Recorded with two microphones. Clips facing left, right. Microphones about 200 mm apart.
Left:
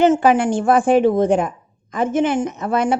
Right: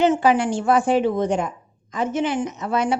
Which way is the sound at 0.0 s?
50° left (ahead or behind).